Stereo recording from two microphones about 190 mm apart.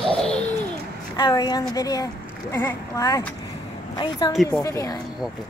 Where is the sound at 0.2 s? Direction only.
5° left (ahead or behind).